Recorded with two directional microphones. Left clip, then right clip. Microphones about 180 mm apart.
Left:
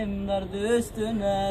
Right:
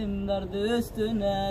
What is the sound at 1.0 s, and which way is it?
Mantra, 20° left (ahead or behind).